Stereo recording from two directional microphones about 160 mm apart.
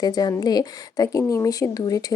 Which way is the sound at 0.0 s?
25° left (ahead or behind).